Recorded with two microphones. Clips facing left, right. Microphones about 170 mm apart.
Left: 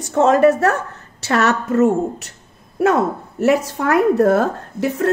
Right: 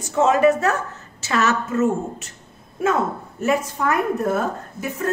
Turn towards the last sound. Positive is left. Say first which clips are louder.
# left 7 dB
turn(degrees=70)  # may be behind; listen again after turning